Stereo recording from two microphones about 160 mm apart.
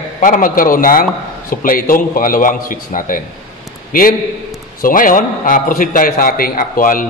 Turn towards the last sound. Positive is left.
turn(degrees=60)  # may be behind; listen again after turning